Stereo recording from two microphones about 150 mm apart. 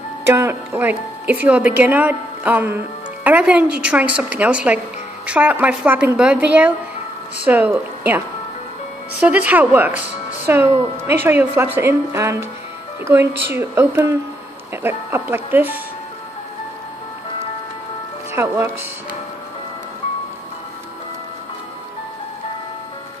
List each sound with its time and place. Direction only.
0.3 s a woman's voice: 15° right (ahead or behind)
9.2 s a woman's voice: 10° right (ahead or behind)
18.3 s speech: 15° right (ahead or behind)